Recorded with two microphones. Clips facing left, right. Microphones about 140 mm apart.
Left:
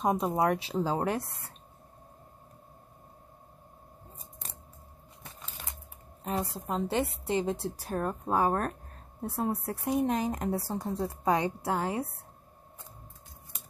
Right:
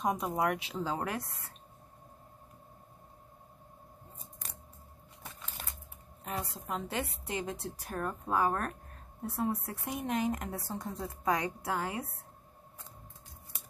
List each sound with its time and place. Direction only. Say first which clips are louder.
0.0 s speech: left 4 dB; 30° left (ahead or behind)
6.2 s speech: left 6 dB; 30° left (ahead or behind)